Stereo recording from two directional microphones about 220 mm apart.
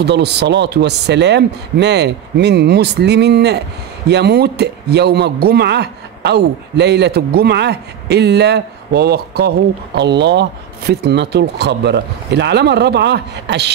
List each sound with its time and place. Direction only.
0.0 s speech: 50° right (ahead or behind)